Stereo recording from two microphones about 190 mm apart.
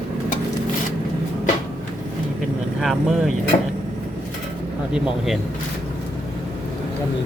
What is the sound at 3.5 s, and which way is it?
Speech, 40° left (ahead or behind).